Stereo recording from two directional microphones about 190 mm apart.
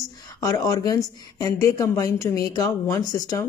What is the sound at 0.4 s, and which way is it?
A woman's voice, 20° left (ahead or behind).